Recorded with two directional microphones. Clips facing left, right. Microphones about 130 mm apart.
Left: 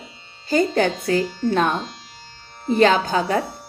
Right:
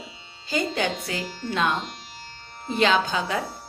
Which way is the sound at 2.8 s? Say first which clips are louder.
Left 5 dB; 45° left (ahead or behind).